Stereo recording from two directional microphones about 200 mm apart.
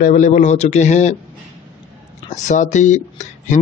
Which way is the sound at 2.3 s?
35° left (ahead or behind).